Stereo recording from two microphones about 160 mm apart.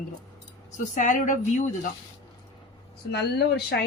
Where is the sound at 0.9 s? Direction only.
50° left (ahead or behind).